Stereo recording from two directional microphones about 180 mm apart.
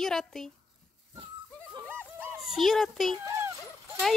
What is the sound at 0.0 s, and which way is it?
Speech, 5° left (ahead or behind).